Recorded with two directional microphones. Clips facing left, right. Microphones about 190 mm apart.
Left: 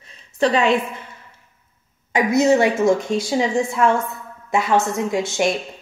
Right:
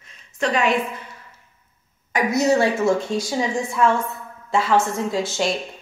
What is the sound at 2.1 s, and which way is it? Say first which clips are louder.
A woman's voice: left 3 dB; 25° left (ahead or behind).